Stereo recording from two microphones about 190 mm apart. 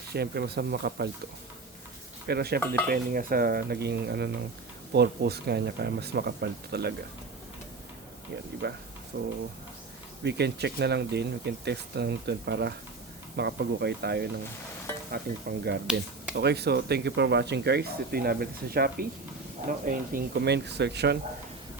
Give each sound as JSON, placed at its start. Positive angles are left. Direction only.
{"t": 0.1, "sound": "speech", "side_deg": -55}
{"t": 2.2, "sound": "speech", "side_deg": -55}
{"t": 8.6, "sound": "speech", "side_deg": -60}